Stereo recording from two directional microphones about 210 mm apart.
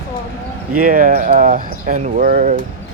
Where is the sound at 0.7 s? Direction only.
40° right (ahead or behind).